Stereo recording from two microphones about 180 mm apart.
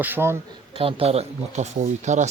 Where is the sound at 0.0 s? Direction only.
10° right (ahead or behind).